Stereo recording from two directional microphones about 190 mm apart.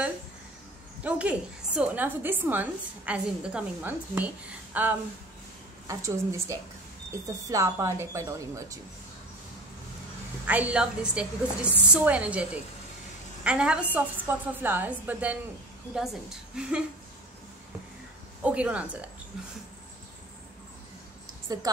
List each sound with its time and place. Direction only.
1.0 s a woman's voice: 5° right (ahead or behind)
10.4 s a woman's voice: 10° right (ahead or behind)
18.4 s a woman's voice: 5° right (ahead or behind)